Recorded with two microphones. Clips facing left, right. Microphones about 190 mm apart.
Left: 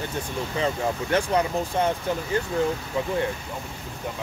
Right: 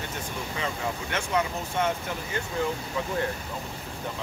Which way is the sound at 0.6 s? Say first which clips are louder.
Left 7 dB; 35° left (ahead or behind).